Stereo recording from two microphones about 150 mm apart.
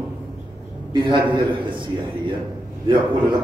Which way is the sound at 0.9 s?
30° right (ahead or behind).